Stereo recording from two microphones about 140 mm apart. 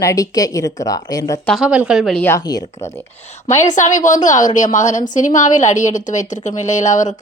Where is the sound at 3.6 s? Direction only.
60° left (ahead or behind).